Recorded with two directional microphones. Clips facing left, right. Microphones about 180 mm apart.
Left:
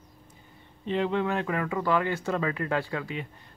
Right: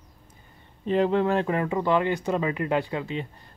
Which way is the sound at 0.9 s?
40° right (ahead or behind).